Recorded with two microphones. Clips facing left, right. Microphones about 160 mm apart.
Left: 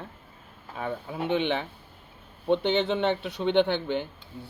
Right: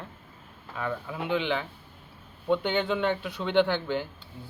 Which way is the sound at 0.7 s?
30° left (ahead or behind).